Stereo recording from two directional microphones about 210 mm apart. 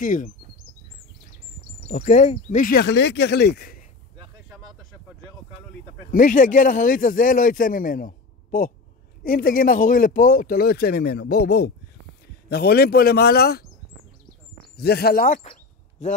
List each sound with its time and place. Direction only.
0.0 s a man's voice: 40° left (ahead or behind)
1.9 s speech: 35° left (ahead or behind)
6.1 s a man's voice: 40° left (ahead or behind)
14.8 s speech: 50° left (ahead or behind)
15.4 s a sound: 35° left (ahead or behind)